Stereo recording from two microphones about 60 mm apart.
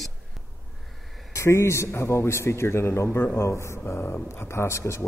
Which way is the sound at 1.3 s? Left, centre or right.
Left.